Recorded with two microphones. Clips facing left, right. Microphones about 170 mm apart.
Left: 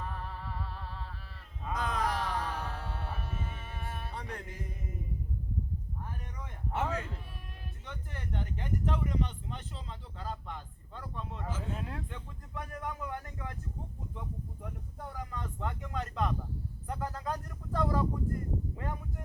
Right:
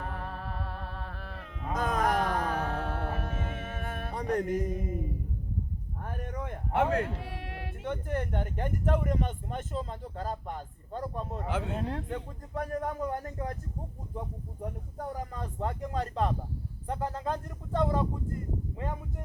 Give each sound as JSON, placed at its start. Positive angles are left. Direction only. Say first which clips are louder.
{"t": 0.0, "sound": "music", "louder": "right 3 dB", "side_deg": -60}
{"t": 1.7, "sound": "a sound", "louder": "right 5 dB", "side_deg": -45}
{"t": 2.6, "sound": "music", "louder": "right 8 dB", "side_deg": -55}
{"t": 6.0, "sound": "a sound", "louder": "right 7 dB", "side_deg": -60}
{"t": 7.9, "sound": "speech", "louder": "right 11 dB", "side_deg": -55}
{"t": 11.4, "sound": "speech", "louder": "right 6 dB", "side_deg": -65}
{"t": 11.8, "sound": "speech", "louder": "right 8 dB", "side_deg": -35}